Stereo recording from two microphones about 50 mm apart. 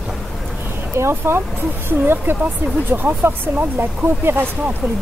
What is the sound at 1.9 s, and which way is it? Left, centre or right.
Speech, right.